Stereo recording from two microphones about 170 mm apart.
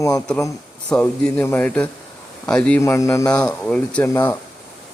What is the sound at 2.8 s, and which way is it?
Speech, 20° left (ahead or behind).